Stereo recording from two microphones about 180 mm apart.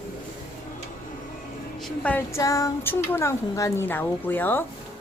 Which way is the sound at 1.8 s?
5° left (ahead or behind).